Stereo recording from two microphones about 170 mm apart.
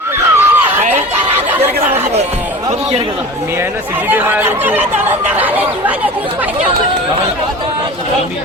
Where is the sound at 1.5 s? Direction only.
10° right (ahead or behind).